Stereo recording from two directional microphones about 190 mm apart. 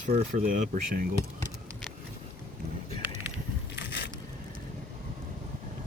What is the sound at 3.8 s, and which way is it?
Boat, 65° left (ahead or behind).